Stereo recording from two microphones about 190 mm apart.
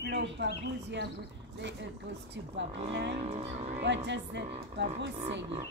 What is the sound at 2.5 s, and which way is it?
Speech, 65° right (ahead or behind).